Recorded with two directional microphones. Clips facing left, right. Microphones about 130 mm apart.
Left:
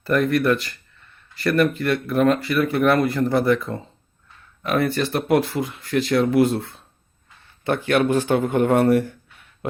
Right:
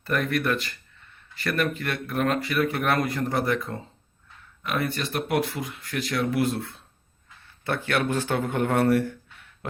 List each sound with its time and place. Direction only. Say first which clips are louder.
0.0 s speech: left 7 dB; 35° left (ahead or behind)
7.6 s a man's voice: left 6 dB; 20° left (ahead or behind)